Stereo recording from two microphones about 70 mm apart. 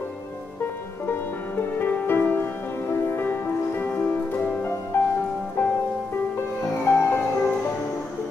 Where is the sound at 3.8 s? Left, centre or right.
Centre.